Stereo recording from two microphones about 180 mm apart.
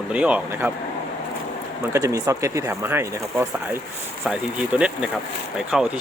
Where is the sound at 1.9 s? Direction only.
20° right (ahead or behind).